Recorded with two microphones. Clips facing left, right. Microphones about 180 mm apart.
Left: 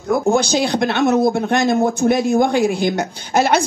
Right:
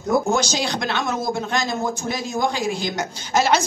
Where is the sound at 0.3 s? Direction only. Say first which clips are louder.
Left 6 dB; 55° left (ahead or behind).